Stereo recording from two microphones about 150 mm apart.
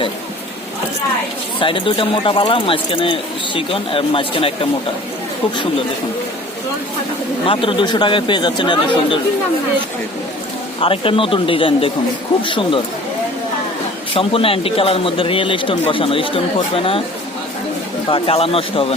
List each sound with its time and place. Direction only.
1.5 s speech: 35° left (ahead or behind)
7.4 s speech: 35° left (ahead or behind)
10.8 s speech: 40° left (ahead or behind)
14.1 s speech: 40° left (ahead or behind)
18.1 s speech: 40° left (ahead or behind)